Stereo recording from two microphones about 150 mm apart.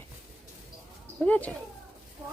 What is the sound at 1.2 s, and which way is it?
Speech, 10° left (ahead or behind).